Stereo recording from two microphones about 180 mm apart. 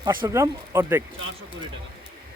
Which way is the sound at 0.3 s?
15° right (ahead or behind).